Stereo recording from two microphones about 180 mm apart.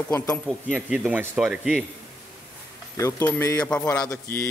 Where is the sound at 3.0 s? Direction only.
15° left (ahead or behind).